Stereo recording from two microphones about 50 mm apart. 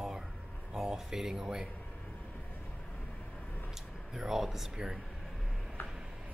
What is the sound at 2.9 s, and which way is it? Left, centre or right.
Vehicle, left.